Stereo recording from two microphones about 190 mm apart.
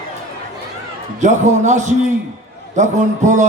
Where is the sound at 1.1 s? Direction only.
40° right (ahead or behind).